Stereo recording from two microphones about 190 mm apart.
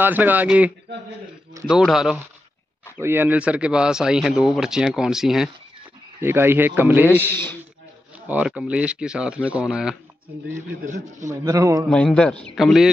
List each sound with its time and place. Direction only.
0.0 s speech: 10° right (ahead or behind)
8.3 s speech: 5° right (ahead or behind)
11.1 s speech: 15° right (ahead or behind)
11.9 s speech: 5° left (ahead or behind)